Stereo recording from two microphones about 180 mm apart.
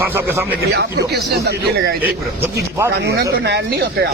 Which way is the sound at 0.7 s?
65° right (ahead or behind).